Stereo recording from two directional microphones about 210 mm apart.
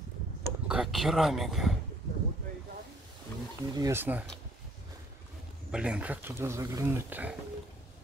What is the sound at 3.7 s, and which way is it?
Speech, 15° right (ahead or behind).